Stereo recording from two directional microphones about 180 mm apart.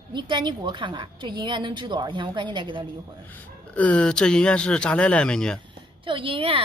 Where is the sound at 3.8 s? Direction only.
5° left (ahead or behind).